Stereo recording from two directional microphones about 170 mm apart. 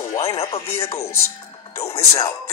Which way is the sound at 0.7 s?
35° left (ahead or behind).